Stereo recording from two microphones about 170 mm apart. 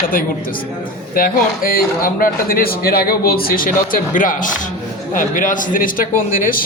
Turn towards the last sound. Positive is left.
turn(degrees=55)  # may be behind; listen again after turning